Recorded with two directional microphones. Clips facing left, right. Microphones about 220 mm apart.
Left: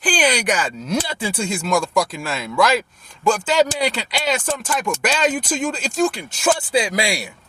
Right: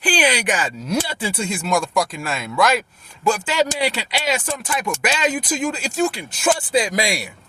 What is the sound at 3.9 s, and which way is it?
Speech, 5° right (ahead or behind).